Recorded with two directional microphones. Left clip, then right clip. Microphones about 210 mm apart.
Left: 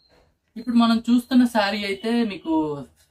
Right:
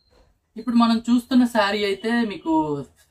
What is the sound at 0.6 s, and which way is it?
Speech, 15° left (ahead or behind).